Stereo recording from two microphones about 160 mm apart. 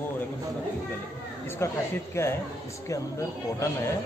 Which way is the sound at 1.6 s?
15° left (ahead or behind).